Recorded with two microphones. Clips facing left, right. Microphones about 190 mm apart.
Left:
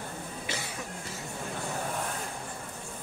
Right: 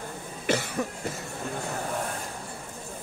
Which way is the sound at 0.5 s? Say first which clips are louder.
Right 13 dB; 60° right (ahead or behind).